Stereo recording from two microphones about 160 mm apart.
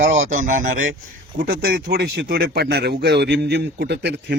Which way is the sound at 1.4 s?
70° right (ahead or behind).